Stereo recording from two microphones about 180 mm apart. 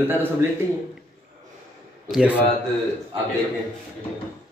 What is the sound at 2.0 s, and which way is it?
Speech, 5° right (ahead or behind).